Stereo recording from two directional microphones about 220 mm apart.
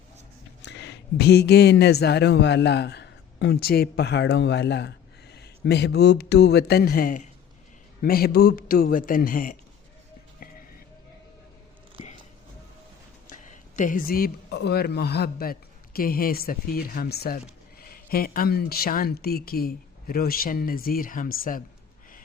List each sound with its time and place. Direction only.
0.6 s speech: 50° left (ahead or behind)
13.2 s speech: 35° left (ahead or behind)